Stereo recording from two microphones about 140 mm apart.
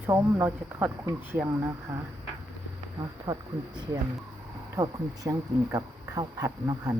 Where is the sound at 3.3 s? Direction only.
30° right (ahead or behind).